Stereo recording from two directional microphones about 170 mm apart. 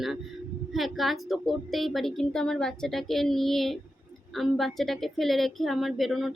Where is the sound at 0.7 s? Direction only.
Centre (ahead or behind).